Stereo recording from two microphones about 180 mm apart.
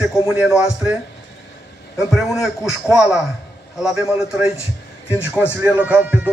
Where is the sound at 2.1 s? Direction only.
5° right (ahead or behind).